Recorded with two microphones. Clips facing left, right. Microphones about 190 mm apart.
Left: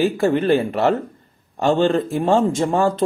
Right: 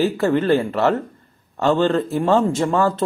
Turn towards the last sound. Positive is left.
turn(degrees=20)  # may be behind; listen again after turning